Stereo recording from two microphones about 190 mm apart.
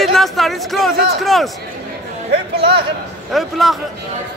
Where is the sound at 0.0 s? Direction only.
Centre (ahead or behind).